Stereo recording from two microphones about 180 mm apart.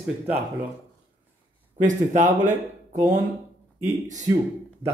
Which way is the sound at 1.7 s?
45° right (ahead or behind).